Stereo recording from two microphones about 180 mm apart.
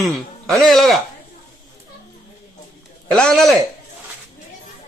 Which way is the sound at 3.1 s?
5° left (ahead or behind).